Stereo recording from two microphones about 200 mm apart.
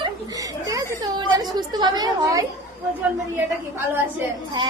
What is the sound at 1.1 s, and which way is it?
Chatter, 20° right (ahead or behind).